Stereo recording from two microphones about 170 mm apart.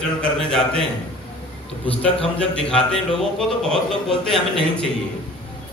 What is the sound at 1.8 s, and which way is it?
Speech, 35° left (ahead or behind).